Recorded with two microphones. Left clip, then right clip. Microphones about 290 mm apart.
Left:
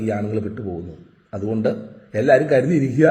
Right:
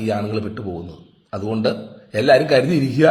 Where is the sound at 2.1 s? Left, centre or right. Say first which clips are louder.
Right 1 dB; right.